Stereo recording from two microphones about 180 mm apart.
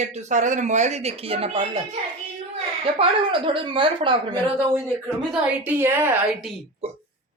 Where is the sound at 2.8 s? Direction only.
30° right (ahead or behind).